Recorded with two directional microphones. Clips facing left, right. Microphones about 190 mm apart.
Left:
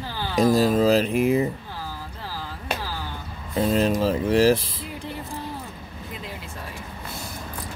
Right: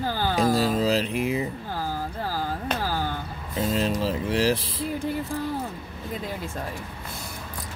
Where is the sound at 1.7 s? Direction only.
45° right (ahead or behind).